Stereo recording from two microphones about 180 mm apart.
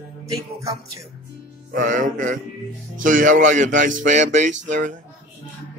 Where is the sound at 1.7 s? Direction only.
45° right (ahead or behind).